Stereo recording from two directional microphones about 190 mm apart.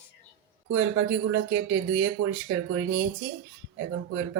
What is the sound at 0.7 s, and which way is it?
Speech, 90° right.